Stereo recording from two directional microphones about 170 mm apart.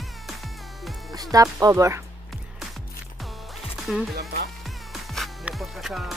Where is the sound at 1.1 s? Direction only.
20° right (ahead or behind).